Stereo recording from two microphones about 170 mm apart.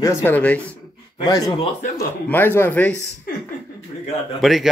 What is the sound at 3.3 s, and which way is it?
Chuckle, 60° left (ahead or behind).